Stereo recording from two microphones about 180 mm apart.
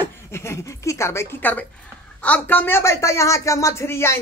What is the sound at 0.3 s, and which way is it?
A woman's voice, 15° left (ahead or behind).